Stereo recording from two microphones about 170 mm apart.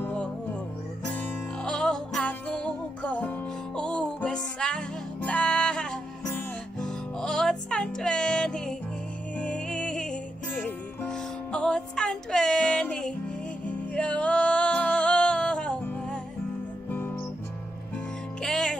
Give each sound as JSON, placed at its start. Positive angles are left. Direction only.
{"t": 0.0, "sound": "music", "side_deg": 5}
{"t": 18.4, "sound": "music", "side_deg": 5}